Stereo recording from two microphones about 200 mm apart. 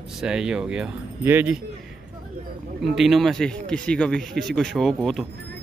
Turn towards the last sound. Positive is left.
turn(degrees=0)  # may be behind; listen again after turning